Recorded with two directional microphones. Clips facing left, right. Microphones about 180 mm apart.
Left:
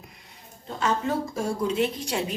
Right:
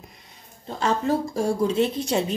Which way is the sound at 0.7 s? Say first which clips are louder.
Right 3 dB; 35° right (ahead or behind).